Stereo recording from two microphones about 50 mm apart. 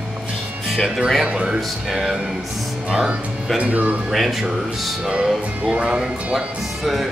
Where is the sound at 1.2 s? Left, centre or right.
Centre.